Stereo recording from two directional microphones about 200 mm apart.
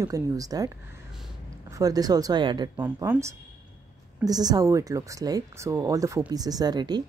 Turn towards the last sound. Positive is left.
turn(degrees=-20)  # may be behind; listen again after turning